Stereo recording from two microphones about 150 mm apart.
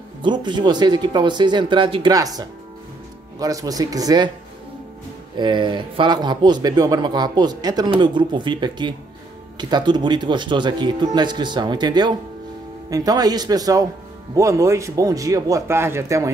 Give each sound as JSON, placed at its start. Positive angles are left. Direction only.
{"t": 0.2, "sound": "speech", "side_deg": -30}
{"t": 5.4, "sound": "speech", "side_deg": -30}